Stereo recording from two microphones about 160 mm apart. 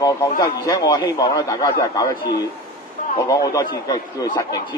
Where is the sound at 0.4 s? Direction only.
25° left (ahead or behind).